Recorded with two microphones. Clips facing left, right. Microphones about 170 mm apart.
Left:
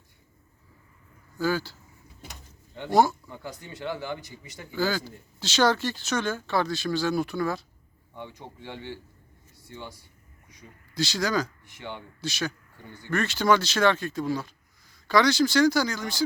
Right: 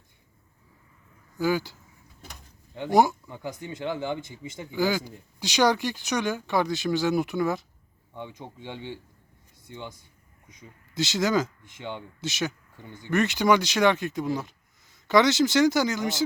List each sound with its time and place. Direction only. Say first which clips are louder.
1.4 s speech: right 2 dB; 20° right (ahead or behind)